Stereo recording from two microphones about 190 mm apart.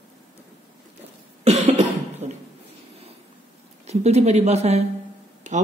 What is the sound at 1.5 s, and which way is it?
Cough, 35° right (ahead or behind).